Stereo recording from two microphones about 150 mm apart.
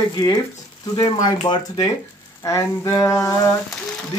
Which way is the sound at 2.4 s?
20° left (ahead or behind).